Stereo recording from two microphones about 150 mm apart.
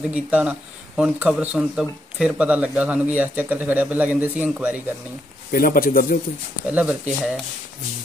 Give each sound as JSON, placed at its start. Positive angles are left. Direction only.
{"t": 0.1, "sound": "speech", "side_deg": -10}
{"t": 5.5, "sound": "speech", "side_deg": 70}
{"t": 6.7, "sound": "speech", "side_deg": -10}